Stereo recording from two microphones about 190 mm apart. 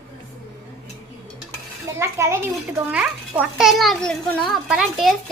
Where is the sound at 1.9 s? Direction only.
15° right (ahead or behind).